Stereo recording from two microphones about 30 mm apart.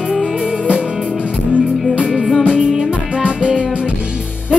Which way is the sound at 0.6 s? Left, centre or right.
Right.